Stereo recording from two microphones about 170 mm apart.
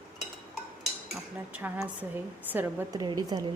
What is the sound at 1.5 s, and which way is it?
A woman's voice, 10° right (ahead or behind).